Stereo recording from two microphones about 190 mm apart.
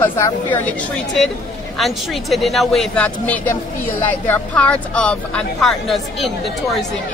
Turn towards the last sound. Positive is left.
turn(degrees=0)  # may be behind; listen again after turning